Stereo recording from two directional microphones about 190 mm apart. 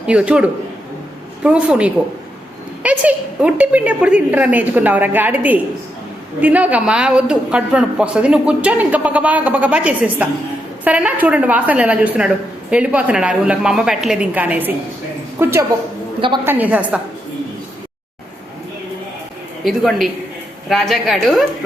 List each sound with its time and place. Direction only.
0.0 s a man's voice: 5° right (ahead or behind)
1.5 s a woman's voice: 5° right (ahead or behind)
19.6 s a woman's voice: centre (ahead or behind)